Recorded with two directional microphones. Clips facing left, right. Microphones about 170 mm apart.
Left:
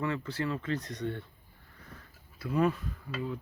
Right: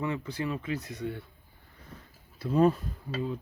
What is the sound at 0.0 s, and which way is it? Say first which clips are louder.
Speech: right 1 dB; 15° right (ahead or behind).